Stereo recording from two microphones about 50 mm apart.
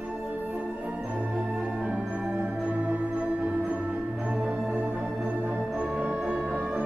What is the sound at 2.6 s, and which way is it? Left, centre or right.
Music, right.